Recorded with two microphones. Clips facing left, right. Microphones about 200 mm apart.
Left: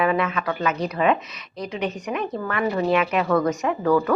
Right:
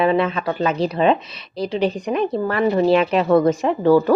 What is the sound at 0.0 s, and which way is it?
Speech, 30° right (ahead or behind).